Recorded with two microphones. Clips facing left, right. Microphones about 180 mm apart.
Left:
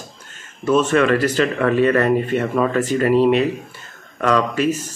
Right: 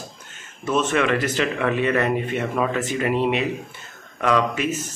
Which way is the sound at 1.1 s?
15° right (ahead or behind).